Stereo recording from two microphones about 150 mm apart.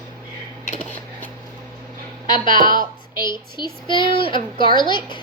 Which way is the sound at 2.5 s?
65° right (ahead or behind).